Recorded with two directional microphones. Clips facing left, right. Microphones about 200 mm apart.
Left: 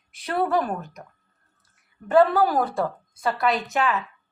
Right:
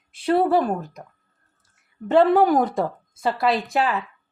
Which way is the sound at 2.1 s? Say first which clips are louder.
Right 2 dB; 25° right (ahead or behind).